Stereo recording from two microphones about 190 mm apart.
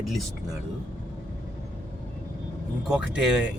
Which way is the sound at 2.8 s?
5° right (ahead or behind).